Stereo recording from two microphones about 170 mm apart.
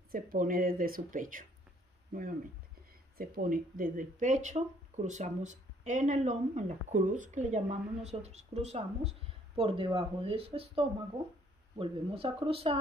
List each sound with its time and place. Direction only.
0.1 s speech: 55° right (ahead or behind)
3.2 s speech: 60° right (ahead or behind); by 12.7 s 35° right (ahead or behind)